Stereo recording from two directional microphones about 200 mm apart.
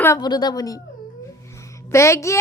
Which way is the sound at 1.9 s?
15° left (ahead or behind).